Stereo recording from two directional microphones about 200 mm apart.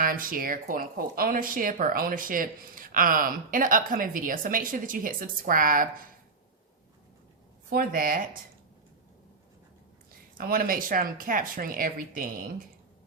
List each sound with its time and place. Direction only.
0.0 s speech: 45° right (ahead or behind)
7.7 s speech: 45° right (ahead or behind)
10.3 s speech: 45° right (ahead or behind)